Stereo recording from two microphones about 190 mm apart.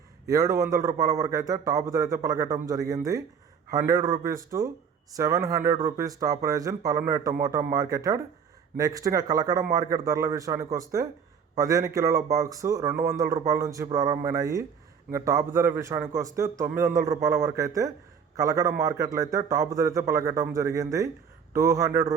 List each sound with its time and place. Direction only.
0.3 s a man's voice: 15° right (ahead or behind)